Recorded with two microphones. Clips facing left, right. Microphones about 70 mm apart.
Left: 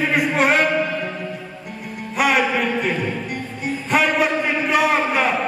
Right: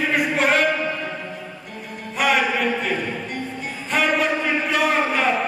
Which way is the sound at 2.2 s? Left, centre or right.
Centre.